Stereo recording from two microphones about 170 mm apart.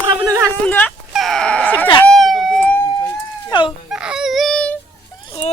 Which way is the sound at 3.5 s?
25° left (ahead or behind).